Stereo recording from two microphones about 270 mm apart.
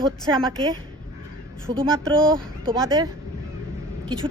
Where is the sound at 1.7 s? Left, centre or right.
Centre.